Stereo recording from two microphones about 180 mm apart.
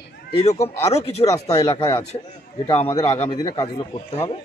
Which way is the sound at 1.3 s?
20° left (ahead or behind).